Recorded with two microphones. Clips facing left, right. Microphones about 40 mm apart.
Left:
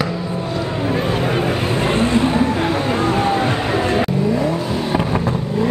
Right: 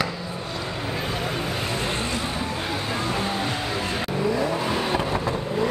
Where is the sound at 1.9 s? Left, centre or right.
Left.